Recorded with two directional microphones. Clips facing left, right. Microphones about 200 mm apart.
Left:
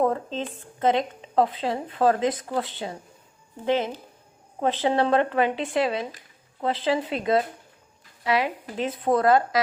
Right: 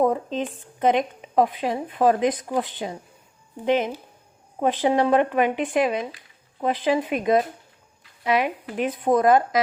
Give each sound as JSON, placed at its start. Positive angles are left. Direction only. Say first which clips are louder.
{"t": 0.0, "sound": "speech", "louder": "right 2 dB", "side_deg": -15}